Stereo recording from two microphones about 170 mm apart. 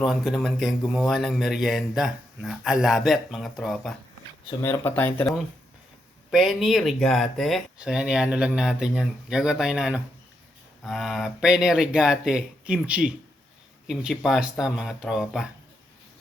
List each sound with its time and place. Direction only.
0.0 s speech: centre (ahead or behind)
4.6 s speech: 15° left (ahead or behind)
6.3 s speech: centre (ahead or behind)